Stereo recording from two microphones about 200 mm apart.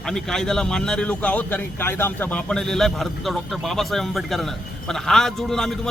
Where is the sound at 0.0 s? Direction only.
5° left (ahead or behind).